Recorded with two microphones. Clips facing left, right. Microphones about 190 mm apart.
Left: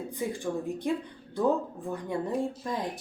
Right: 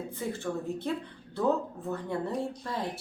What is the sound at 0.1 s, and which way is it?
Speech, 15° left (ahead or behind).